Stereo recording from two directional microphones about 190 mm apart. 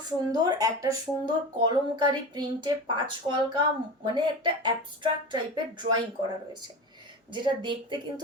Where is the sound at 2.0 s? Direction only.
25° right (ahead or behind).